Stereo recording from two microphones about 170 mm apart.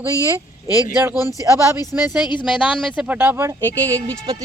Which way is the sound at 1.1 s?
20° left (ahead or behind).